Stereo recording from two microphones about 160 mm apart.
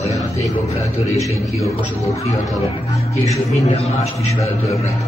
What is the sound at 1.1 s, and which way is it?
Speech, 20° left (ahead or behind).